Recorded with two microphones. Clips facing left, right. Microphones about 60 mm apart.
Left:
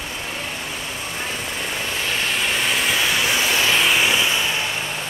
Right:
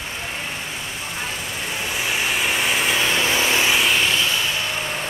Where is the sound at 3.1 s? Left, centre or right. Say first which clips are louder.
Right 1 dB; right.